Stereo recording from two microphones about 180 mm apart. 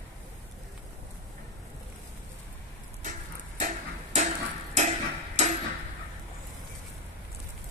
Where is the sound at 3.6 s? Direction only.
45° right (ahead or behind).